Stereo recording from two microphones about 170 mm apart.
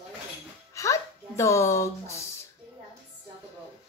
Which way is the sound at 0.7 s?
20° left (ahead or behind).